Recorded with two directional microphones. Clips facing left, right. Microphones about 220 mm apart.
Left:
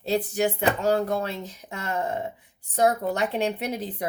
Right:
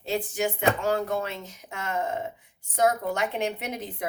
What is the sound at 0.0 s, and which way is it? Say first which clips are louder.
Speech: left 4 dB; 35° left (ahead or behind).